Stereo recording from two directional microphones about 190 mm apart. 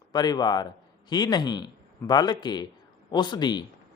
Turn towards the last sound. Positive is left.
turn(degrees=25)  # may be behind; listen again after turning